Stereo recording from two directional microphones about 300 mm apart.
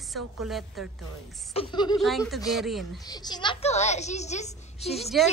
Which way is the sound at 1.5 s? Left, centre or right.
Centre.